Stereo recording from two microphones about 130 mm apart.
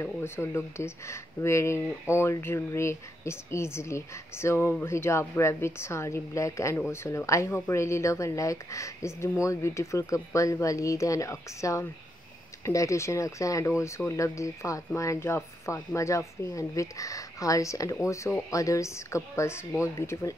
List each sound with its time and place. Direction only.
0.0 s speech: 20° left (ahead or behind)